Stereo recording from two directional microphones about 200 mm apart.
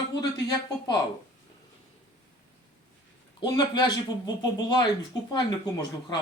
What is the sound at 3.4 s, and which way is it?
Speech, 20° left (ahead or behind).